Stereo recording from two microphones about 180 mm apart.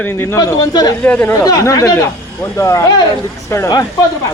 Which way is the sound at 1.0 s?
5° left (ahead or behind).